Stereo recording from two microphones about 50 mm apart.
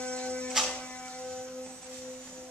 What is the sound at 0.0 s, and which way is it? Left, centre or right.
Hum, left.